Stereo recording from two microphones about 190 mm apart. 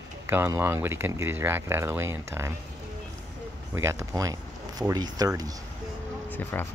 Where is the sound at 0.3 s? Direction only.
10° right (ahead or behind).